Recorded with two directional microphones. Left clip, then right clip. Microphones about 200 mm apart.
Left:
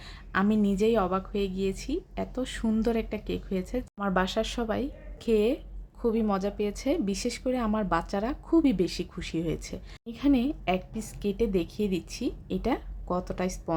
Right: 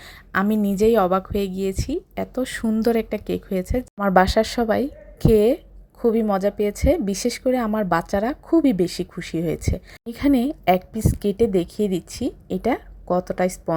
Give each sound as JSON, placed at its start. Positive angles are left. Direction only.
{"t": 0.0, "sound": "speech", "side_deg": -25}